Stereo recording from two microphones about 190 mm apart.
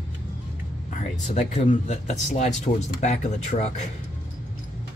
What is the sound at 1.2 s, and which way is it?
Speech, 40° left (ahead or behind).